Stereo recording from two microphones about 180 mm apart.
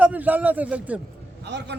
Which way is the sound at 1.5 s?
70° right (ahead or behind).